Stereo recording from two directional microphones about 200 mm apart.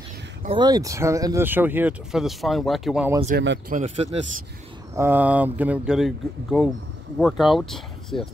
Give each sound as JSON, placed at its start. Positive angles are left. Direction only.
{"t": 0.6, "sound": "speech", "side_deg": -20}
{"t": 3.3, "sound": "speech", "side_deg": -50}
{"t": 3.8, "sound": "a man's voice", "side_deg": -30}
{"t": 4.9, "sound": "speech", "side_deg": -10}